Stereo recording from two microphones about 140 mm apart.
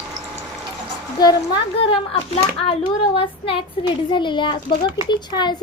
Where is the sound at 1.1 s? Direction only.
30° left (ahead or behind).